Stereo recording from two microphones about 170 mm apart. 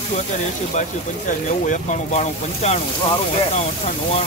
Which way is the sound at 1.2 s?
50° left (ahead or behind).